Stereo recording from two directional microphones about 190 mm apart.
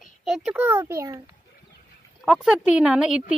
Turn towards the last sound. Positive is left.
turn(degrees=-5)  # may be behind; listen again after turning